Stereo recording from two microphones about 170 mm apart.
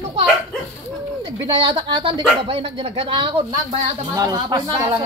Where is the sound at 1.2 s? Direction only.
30° right (ahead or behind).